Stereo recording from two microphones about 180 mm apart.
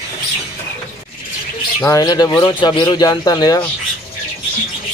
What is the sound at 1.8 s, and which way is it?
Speech, 20° left (ahead or behind).